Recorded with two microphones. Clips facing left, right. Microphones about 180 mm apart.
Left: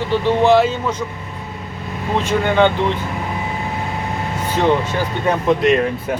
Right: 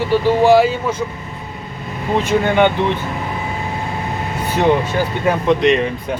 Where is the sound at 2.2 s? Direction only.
15° right (ahead or behind).